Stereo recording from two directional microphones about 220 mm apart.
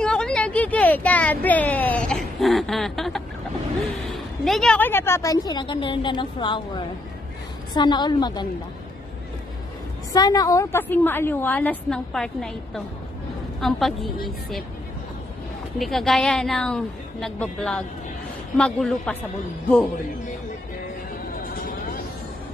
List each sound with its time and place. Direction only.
0.0 s a sound: 5° left (ahead or behind)
4.5 s a woman's voice: centre (ahead or behind); by 8.5 s 20° left (ahead or behind)
10.1 s a woman's voice: 15° left (ahead or behind); by 14.1 s centre (ahead or behind)
15.8 s a woman's voice: centre (ahead or behind)